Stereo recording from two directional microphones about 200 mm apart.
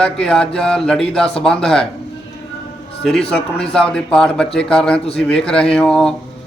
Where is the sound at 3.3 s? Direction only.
5° left (ahead or behind).